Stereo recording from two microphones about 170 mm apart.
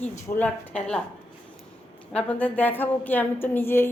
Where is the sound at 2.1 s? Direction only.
10° left (ahead or behind).